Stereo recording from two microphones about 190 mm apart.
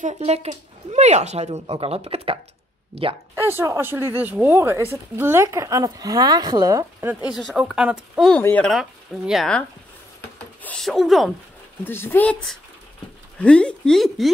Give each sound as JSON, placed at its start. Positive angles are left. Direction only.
{"t": 0.0, "sound": "speech", "side_deg": -35}
{"t": 3.3, "sound": "speech", "side_deg": -10}
{"t": 7.2, "sound": "speech", "side_deg": -5}
{"t": 8.4, "sound": "speech", "side_deg": 10}
{"t": 11.8, "sound": "speech", "side_deg": 10}